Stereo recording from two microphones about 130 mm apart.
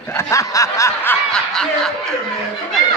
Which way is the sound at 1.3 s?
5° left (ahead or behind).